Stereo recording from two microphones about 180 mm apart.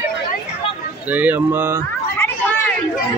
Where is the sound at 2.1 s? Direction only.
10° left (ahead or behind).